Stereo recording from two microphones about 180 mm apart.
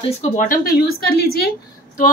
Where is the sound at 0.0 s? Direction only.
40° left (ahead or behind).